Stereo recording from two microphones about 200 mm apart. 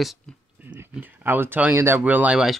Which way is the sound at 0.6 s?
10° right (ahead or behind).